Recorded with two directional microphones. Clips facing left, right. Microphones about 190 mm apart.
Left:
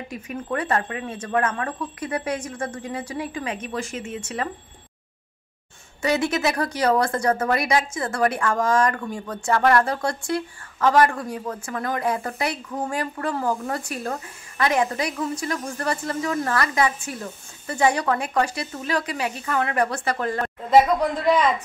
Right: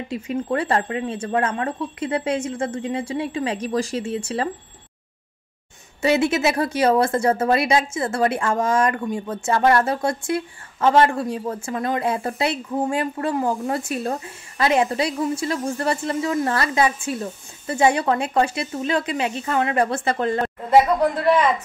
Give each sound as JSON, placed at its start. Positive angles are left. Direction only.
{"t": 0.1, "sound": "a woman's voice", "side_deg": -25}
{"t": 6.0, "sound": "a woman's voice", "side_deg": -25}